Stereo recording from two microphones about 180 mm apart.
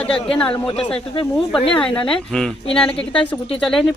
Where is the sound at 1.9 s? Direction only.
30° left (ahead or behind).